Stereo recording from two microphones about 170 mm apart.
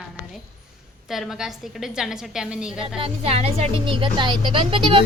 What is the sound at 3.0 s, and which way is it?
Speech, 35° right (ahead or behind).